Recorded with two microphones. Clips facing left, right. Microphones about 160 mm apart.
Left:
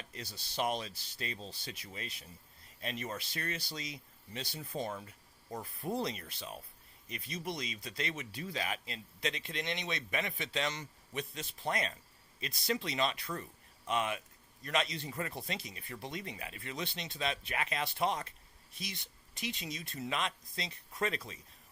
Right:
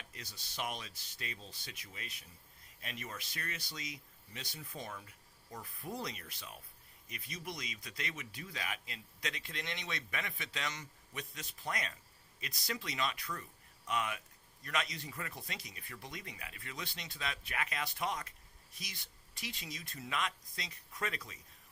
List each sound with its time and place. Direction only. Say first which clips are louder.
0.0 s speech: left 5 dB; 30° left (ahead or behind)